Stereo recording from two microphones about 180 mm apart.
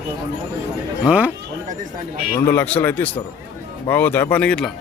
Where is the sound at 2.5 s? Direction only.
10° left (ahead or behind).